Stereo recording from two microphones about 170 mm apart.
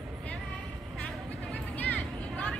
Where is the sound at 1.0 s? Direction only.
10° left (ahead or behind).